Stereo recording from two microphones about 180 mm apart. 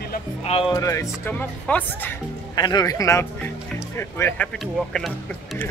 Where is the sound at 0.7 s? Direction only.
15° left (ahead or behind).